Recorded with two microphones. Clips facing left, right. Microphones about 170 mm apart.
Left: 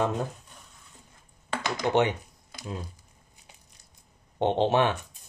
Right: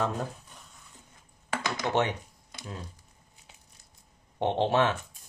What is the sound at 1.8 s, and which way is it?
Speech, 20° left (ahead or behind).